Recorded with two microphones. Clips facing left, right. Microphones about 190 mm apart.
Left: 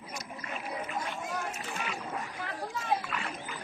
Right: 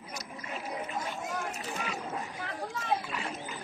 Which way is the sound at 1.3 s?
Centre (ahead or behind).